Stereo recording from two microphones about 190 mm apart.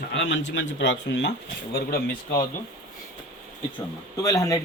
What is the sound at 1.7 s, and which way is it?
Speech, 55° left (ahead or behind).